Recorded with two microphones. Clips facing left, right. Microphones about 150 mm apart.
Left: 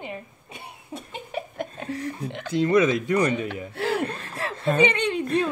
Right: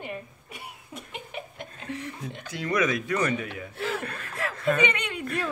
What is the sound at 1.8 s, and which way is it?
Speech, 35° left (ahead or behind).